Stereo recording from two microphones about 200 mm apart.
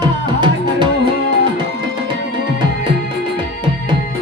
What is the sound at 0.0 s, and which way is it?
Music, 25° right (ahead or behind).